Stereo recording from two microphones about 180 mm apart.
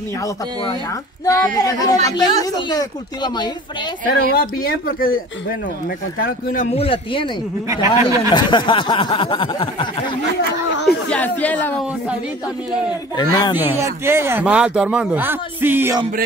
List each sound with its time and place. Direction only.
1.2 s snicker: 20° left (ahead or behind)
4.3 s speech: 55° left (ahead or behind)
6.2 s speech: 50° left (ahead or behind)
6.7 s a man's voice: 30° left (ahead or behind)
7.6 s speech: 15° right (ahead or behind)
8.3 s snicker: 25° left (ahead or behind)
10.9 s speech: 5° left (ahead or behind)
13.1 s snicker: 20° left (ahead or behind)
13.6 s speech: 15° right (ahead or behind)